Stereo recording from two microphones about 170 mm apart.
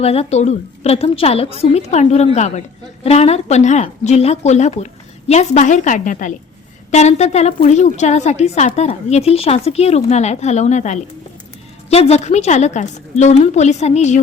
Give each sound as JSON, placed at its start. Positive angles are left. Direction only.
{"t": 0.0, "sound": "a woman's voice", "side_deg": 35}